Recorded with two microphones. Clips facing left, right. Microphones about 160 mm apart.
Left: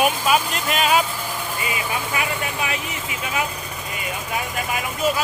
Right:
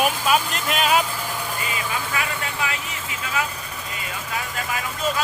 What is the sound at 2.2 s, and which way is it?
Speech, 20° left (ahead or behind).